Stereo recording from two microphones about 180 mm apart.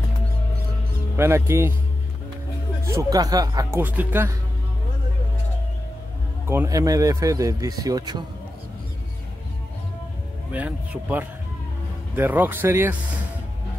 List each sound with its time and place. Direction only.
1.1 s speech: 15° right (ahead or behind)
2.9 s speech: 20° right (ahead or behind)
6.4 s speech: 15° right (ahead or behind)
10.5 s speech: 10° right (ahead or behind)